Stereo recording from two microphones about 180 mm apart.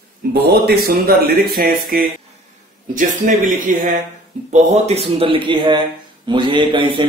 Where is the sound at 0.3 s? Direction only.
60° right (ahead or behind).